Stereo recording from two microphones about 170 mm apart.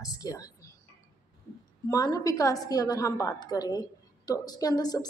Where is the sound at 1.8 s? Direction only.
20° left (ahead or behind).